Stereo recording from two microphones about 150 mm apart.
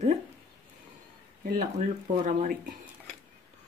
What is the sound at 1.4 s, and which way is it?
Speech, 65° right (ahead or behind).